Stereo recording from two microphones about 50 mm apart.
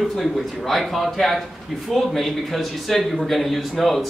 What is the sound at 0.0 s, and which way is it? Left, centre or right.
A man's voice, centre.